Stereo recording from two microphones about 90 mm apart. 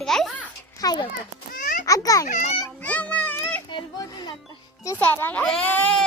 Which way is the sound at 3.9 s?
45° left (ahead or behind).